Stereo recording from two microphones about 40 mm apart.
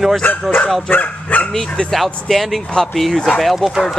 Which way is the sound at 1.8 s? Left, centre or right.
Centre.